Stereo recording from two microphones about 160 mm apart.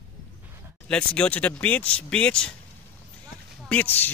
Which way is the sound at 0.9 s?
10° left (ahead or behind).